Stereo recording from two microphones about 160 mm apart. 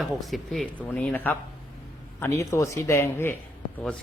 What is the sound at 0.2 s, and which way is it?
Speech, centre (ahead or behind).